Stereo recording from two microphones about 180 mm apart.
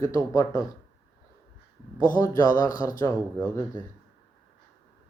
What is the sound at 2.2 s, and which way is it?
Speech, 20° left (ahead or behind).